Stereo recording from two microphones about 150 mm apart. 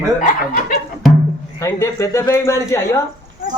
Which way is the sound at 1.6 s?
20° left (ahead or behind).